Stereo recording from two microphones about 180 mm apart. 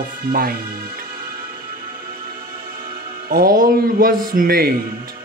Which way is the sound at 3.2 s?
55° right (ahead or behind).